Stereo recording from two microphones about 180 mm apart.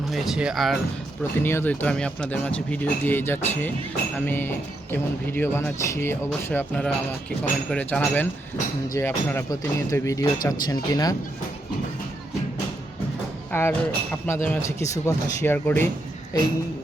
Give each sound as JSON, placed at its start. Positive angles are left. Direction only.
{"t": 0.1, "sound": "speech", "side_deg": -5}
{"t": 1.4, "sound": "speech", "side_deg": 10}
{"t": 13.5, "sound": "speech", "side_deg": 10}